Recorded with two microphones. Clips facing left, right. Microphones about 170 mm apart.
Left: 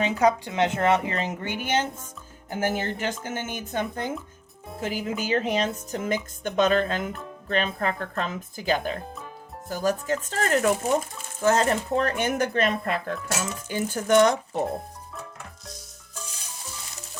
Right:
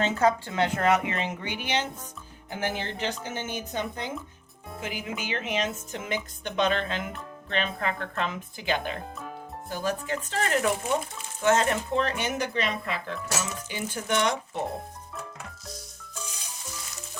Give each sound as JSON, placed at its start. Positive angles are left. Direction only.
{"t": 0.0, "sound": "speech", "side_deg": 15}
{"t": 4.8, "sound": "speech", "side_deg": 40}